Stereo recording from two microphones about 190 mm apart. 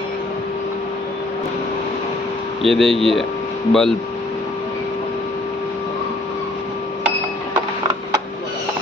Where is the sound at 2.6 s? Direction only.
Centre (ahead or behind).